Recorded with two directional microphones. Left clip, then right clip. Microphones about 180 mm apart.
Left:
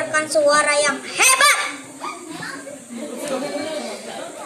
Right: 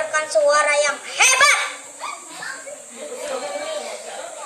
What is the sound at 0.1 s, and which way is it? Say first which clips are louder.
A child's voice: left 1 dB; 35° left (ahead or behind).